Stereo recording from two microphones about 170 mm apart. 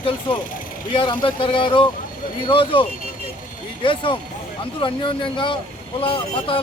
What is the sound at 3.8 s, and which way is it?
A man's voice, 30° left (ahead or behind).